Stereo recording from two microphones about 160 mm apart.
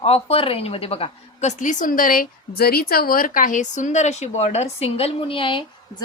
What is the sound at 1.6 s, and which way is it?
A woman's voice, 50° left (ahead or behind).